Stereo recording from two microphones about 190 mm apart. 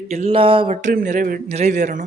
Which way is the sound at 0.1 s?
35° right (ahead or behind).